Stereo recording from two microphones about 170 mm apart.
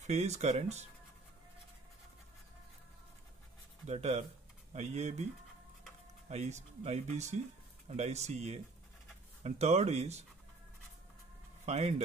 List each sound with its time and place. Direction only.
0.0 s speech: 40° right (ahead or behind)
3.8 s speech: 40° right (ahead or behind)
6.2 s speech: 40° right (ahead or behind)
11.6 s speech: 40° right (ahead or behind)